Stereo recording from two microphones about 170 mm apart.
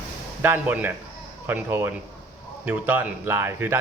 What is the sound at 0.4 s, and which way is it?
Speech, 10° right (ahead or behind).